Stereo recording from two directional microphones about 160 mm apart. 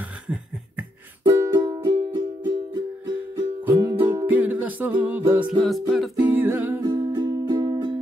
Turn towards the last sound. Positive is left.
turn(degrees=-25)  # may be behind; listen again after turning